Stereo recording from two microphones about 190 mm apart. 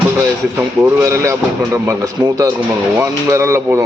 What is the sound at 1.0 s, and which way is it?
Speech, 15° right (ahead or behind).